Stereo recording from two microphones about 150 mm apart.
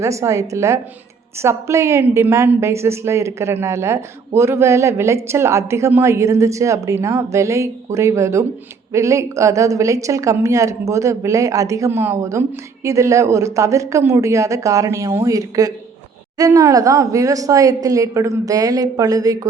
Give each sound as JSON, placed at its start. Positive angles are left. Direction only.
{"t": 0.0, "sound": "a woman's voice", "side_deg": -20}